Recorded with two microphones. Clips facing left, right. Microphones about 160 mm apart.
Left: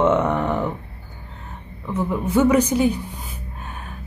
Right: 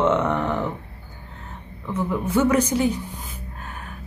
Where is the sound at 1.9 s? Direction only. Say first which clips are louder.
Left 2 dB; 15° left (ahead or behind).